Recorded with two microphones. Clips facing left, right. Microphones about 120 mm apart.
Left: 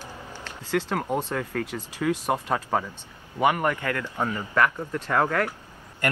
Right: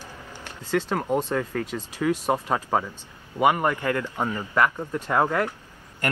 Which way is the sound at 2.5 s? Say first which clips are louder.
Right 1 dB; 20° right (ahead or behind).